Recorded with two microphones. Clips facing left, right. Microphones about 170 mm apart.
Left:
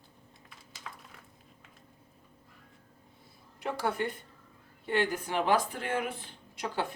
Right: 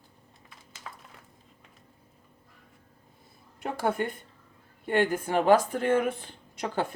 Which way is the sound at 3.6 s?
50° right (ahead or behind).